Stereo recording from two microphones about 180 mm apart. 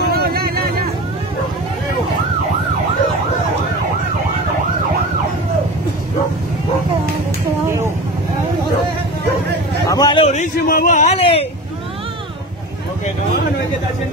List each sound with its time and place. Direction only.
0.1 s vehicle: 60° right (ahead or behind)
7.6 s vehicle: 15° right (ahead or behind)
9.8 s a sound: 25° left (ahead or behind)
10.3 s a man's voice: 45° left (ahead or behind)